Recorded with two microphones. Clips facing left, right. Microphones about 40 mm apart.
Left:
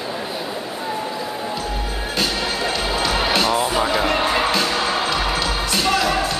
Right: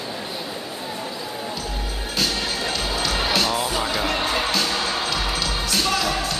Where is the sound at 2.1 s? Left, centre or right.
Centre.